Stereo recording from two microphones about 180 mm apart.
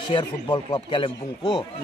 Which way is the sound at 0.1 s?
25° left (ahead or behind).